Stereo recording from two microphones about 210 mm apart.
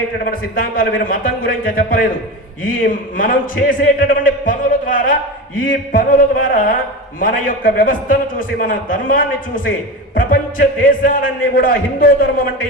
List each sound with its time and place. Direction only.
0.3 s a man's voice: 45° left (ahead or behind)